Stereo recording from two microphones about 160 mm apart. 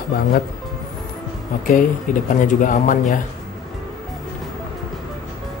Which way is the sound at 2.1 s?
55° left (ahead or behind).